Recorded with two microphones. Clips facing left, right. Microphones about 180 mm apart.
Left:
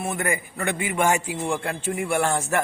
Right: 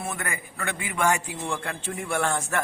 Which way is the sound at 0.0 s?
25° left (ahead or behind).